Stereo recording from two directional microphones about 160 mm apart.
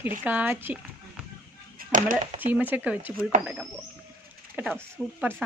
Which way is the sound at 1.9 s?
55° right (ahead or behind).